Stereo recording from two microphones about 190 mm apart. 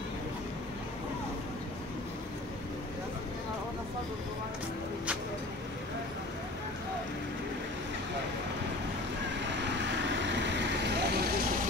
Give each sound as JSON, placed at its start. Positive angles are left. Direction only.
{"t": 9.5, "sound": "vehicle", "side_deg": -70}